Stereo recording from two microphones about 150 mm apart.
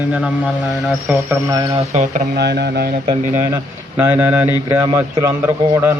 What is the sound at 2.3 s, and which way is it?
Speech, 90° right.